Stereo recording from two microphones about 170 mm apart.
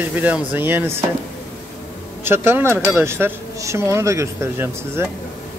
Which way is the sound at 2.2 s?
15° right (ahead or behind).